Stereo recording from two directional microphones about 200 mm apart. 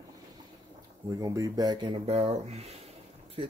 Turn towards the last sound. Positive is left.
turn(degrees=-30)  # may be behind; listen again after turning